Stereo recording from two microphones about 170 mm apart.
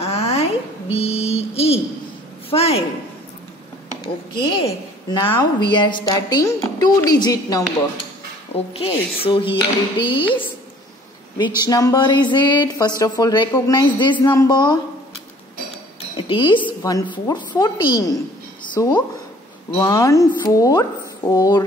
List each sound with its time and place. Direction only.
0.0 s a sound: 35° left (ahead or behind)
2.5 s speech: 35° left (ahead or behind)
4.0 s a woman's voice: 30° left (ahead or behind)
8.7 s a woman's voice: 35° left (ahead or behind)
16.2 s a woman's voice: 30° left (ahead or behind)